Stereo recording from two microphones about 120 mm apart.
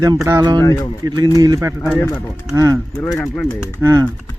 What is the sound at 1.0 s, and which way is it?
Speech, 35° right (ahead or behind).